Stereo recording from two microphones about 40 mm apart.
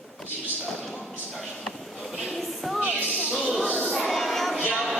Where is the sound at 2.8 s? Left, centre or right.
Right.